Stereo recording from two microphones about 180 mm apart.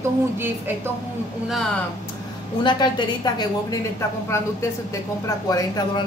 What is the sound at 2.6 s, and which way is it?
A woman's voice, 25° left (ahead or behind).